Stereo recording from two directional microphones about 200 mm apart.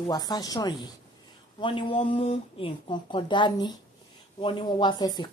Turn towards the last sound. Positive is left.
turn(degrees=20)  # may be behind; listen again after turning